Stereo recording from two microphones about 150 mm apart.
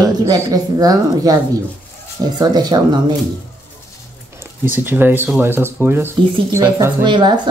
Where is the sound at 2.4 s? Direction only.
25° right (ahead or behind).